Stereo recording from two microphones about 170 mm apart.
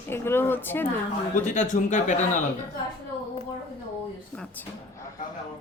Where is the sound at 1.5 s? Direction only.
45° left (ahead or behind).